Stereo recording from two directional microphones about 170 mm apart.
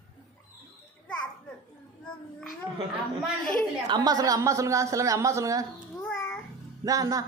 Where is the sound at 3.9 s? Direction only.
20° right (ahead or behind).